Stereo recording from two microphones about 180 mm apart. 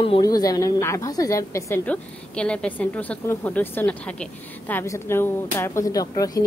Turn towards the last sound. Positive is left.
turn(degrees=20)  # may be behind; listen again after turning